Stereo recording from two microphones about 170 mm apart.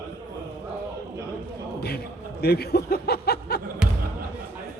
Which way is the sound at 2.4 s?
70° left (ahead or behind).